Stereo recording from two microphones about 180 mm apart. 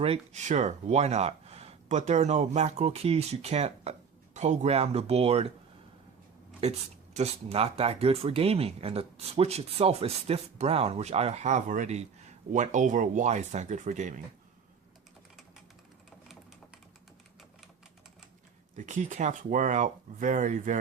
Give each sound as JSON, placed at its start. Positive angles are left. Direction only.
{"t": 0.0, "sound": "speech", "side_deg": -35}
{"t": 6.6, "sound": "speech", "side_deg": -35}
{"t": 18.8, "sound": "speech", "side_deg": -45}